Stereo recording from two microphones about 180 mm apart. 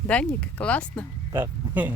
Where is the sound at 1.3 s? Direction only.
10° right (ahead or behind).